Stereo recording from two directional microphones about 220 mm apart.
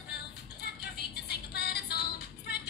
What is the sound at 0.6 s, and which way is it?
Music, 45° left (ahead or behind).